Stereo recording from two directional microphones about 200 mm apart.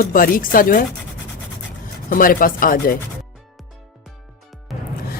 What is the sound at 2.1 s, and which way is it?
Speech, 45° left (ahead or behind).